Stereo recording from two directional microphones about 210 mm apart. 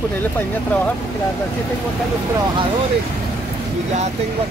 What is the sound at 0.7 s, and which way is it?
Speech, 5° left (ahead or behind).